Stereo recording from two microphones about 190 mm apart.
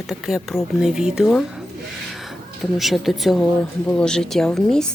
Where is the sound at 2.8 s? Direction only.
Centre (ahead or behind).